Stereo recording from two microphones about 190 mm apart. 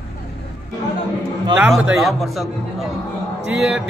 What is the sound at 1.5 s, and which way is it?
Speech, 5° right (ahead or behind).